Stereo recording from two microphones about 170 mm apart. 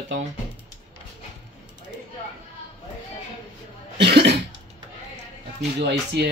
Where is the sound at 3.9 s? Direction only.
85° right.